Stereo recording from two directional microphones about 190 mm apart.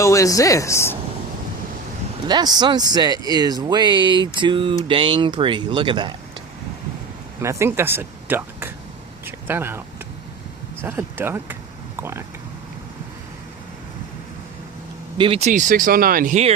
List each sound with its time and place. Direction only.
0.0 s speech: 15° left (ahead or behind)
2.2 s speech: 20° right (ahead or behind)
7.4 s speech: 15° right (ahead or behind)
10.8 s speech: 10° right (ahead or behind)
15.2 s speech: 30° right (ahead or behind)